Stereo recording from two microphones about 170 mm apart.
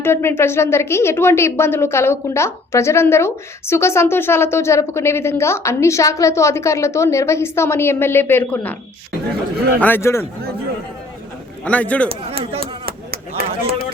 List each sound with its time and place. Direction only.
0.0 s a woman's voice: 15° left (ahead or behind)
9.8 s a woman's voice: 15° left (ahead or behind)
11.6 s a woman's voice: 10° left (ahead or behind)
12.4 s speech: 35° right (ahead or behind)
12.8 s chop: 65° right (ahead or behind)